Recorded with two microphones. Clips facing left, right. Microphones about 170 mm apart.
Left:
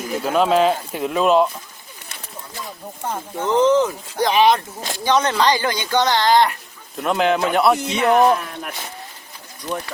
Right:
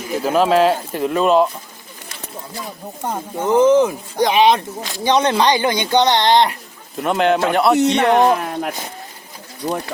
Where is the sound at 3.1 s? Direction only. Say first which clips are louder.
Right 3 dB; 10° right (ahead or behind).